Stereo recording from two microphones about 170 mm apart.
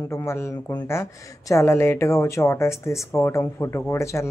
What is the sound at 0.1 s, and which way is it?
Speech, 15° left (ahead or behind).